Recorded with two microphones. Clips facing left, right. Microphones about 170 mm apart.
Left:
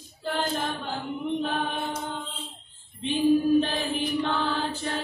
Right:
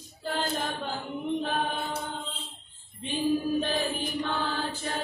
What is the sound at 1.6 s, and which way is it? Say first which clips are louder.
Chant: left 1 dB; 50° right (ahead or behind).